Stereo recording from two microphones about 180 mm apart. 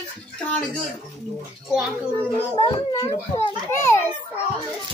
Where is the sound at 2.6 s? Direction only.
25° left (ahead or behind).